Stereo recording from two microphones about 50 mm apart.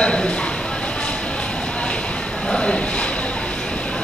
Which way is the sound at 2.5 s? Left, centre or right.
Centre.